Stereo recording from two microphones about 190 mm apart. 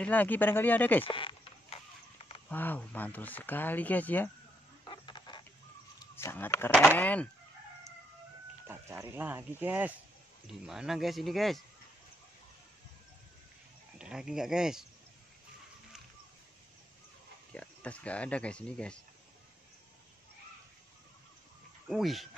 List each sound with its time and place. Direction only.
0.0 s speech: 10° left (ahead or behind)
1.1 s a sound: 25° left (ahead or behind)
2.5 s speech: 10° left (ahead or behind)
4.8 s chicken: 25° left (ahead or behind)
6.1 s speech: 10° left (ahead or behind)
8.6 s speech: 15° right (ahead or behind)
13.9 s speech: 5° right (ahead or behind)
17.5 s speech: 5° left (ahead or behind)
21.8 s speech: centre (ahead or behind)